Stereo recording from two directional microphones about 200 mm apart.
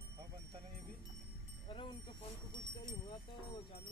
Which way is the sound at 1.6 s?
25° left (ahead or behind).